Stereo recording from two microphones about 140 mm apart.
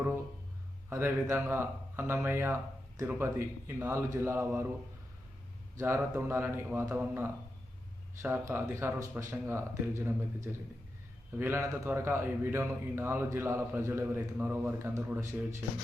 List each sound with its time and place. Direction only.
0.9 s a man's voice: 20° right (ahead or behind)
5.7 s a man's voice: 20° right (ahead or behind)